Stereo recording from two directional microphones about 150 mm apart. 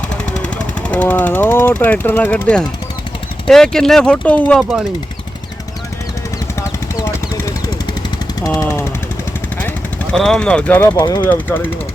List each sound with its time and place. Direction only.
0.3 s speech: 5° left (ahead or behind)
8.4 s jackhammer: 20° left (ahead or behind)
9.6 s speech: 5° left (ahead or behind); by 11.2 s 25° left (ahead or behind)
11.2 s speech: 10° left (ahead or behind)